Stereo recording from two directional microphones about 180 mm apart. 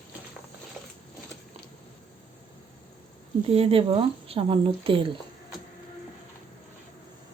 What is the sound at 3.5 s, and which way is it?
Speech, 35° right (ahead or behind).